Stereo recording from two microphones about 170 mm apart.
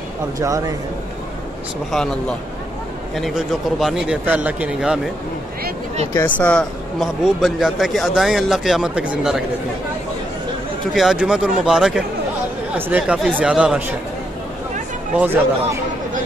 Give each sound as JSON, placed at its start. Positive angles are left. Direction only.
{"t": 0.4, "sound": "speech", "side_deg": -20}
{"t": 1.9, "sound": "speech", "side_deg": 5}
{"t": 6.1, "sound": "speech", "side_deg": 10}
{"t": 10.9, "sound": "speech", "side_deg": 0}
{"t": 15.1, "sound": "speech", "side_deg": -10}